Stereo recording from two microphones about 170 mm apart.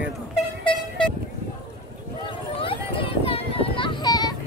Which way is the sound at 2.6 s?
30° left (ahead or behind).